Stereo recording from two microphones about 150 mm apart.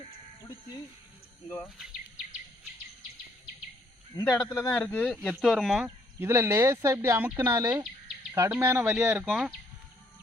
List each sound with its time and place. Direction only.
4.3 s speech: 15° left (ahead or behind); by 7.9 s 25° right (ahead or behind)
8.4 s speech: 10° right (ahead or behind)